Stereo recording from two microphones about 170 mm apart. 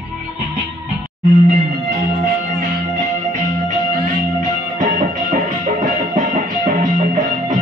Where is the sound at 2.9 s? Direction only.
45° right (ahead or behind).